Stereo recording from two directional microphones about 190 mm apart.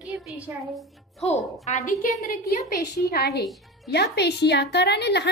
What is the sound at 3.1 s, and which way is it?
Speech, 60° left (ahead or behind).